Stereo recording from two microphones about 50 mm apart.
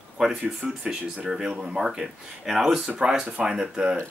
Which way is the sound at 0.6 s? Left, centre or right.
Right.